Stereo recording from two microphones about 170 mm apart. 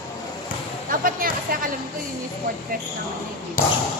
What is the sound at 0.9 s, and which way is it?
Speech, 55° right (ahead or behind).